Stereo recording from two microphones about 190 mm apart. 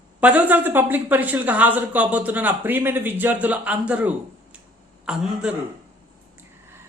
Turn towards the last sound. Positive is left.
turn(degrees=-5)  # may be behind; listen again after turning